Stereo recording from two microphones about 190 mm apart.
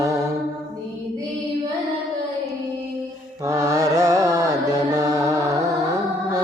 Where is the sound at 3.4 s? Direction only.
15° right (ahead or behind).